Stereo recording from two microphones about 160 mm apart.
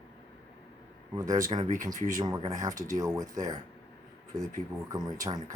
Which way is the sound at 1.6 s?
50° right (ahead or behind).